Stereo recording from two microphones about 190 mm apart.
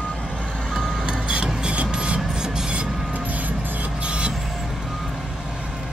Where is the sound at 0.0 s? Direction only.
Centre (ahead or behind).